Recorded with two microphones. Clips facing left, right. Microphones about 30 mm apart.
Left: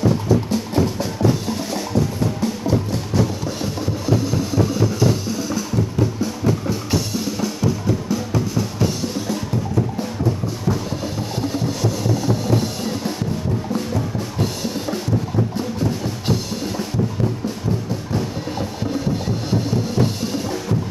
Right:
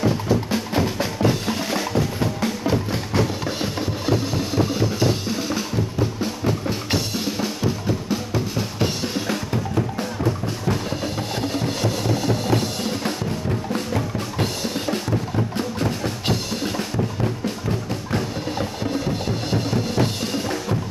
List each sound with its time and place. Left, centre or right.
0.5 s music: right
11.6 s music: right
18.6 s music: right
19.7 s drum: right